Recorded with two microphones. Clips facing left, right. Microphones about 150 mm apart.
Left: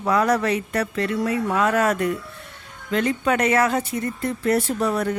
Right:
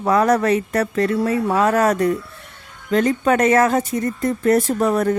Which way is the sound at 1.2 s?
35° right (ahead or behind).